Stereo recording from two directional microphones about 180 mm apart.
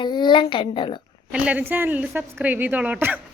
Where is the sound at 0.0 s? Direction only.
25° left (ahead or behind).